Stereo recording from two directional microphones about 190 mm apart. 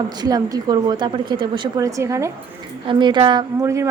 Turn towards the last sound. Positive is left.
turn(degrees=-15)  # may be behind; listen again after turning